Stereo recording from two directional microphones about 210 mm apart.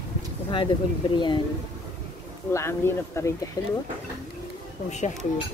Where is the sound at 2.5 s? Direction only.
10° left (ahead or behind).